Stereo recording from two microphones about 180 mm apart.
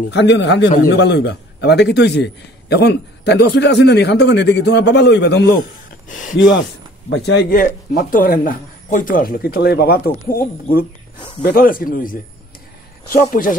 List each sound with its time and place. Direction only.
0.1 s a man's voice: 80° left
6.0 s speech: 45° left (ahead or behind)
6.3 s speech: 90° left
7.1 s speech: 70° left (ahead or behind); by 10.9 s 55° left (ahead or behind)
11.1 s speech: 30° left (ahead or behind)
11.4 s speech: 55° left (ahead or behind)